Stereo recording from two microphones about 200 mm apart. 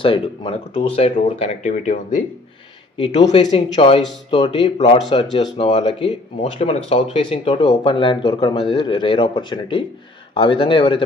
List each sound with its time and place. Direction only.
0.0 s speech: 25° left (ahead or behind)
3.1 s speech: 30° left (ahead or behind)